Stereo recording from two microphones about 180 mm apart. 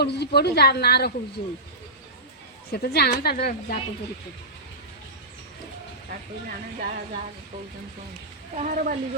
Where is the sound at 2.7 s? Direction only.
60° left (ahead or behind).